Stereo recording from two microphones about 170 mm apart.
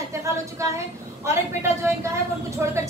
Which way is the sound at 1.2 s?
15° right (ahead or behind).